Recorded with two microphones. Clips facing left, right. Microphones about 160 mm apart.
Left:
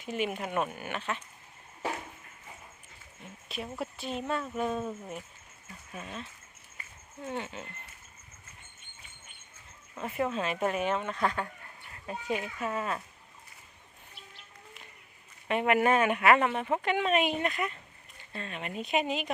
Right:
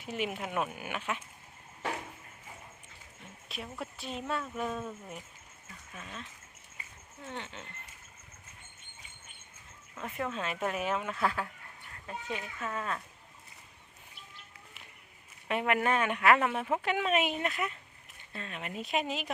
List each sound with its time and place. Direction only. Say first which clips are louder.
0.0 s speech: left 3 dB; centre (ahead or behind)
3.5 s speech: left 4 dB; centre (ahead or behind)
5.9 s speech: left 5 dB; 20° left (ahead or behind)
7.3 s speech: left 6 dB; 10° left (ahead or behind)
9.9 s speech: left 5 dB; 10° left (ahead or behind)
12.0 s speech: left 5 dB; 15° left (ahead or behind)
15.4 s speech: left 4 dB; centre (ahead or behind)